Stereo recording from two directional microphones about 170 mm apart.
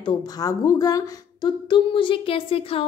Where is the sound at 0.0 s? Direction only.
25° left (ahead or behind).